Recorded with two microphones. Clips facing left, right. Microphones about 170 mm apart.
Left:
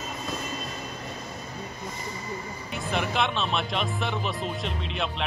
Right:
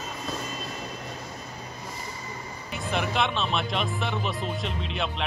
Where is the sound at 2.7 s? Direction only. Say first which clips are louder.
Even; centre (ahead or behind).